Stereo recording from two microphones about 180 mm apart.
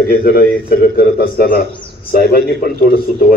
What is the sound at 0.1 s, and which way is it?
A man's voice, 55° left (ahead or behind).